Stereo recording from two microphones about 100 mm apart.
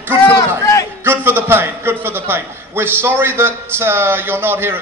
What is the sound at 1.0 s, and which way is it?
A man's voice, 20° right (ahead or behind).